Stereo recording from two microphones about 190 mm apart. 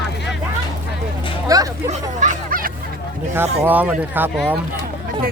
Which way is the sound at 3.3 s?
10° right (ahead or behind).